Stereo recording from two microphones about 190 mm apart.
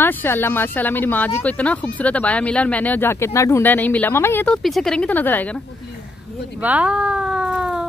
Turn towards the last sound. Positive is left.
turn(degrees=-5)  # may be behind; listen again after turning